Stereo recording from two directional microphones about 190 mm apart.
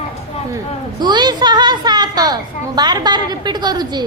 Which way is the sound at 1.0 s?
25° right (ahead or behind).